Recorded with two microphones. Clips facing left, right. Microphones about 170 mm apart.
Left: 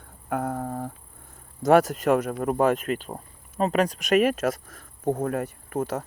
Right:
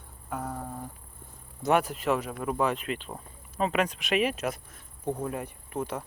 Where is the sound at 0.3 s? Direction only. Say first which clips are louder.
Left 7 dB; 60° left (ahead or behind).